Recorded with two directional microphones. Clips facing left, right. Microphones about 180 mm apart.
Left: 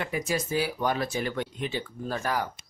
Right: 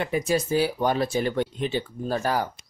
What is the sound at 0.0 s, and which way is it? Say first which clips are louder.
Speech: right 5 dB; 30° right (ahead or behind).